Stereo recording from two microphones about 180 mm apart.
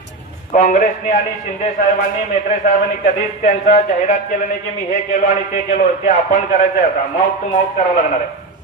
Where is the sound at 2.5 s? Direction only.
45° left (ahead or behind).